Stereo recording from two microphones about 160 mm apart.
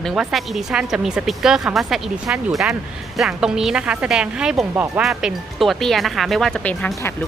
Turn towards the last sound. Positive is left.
turn(degrees=10)  # may be behind; listen again after turning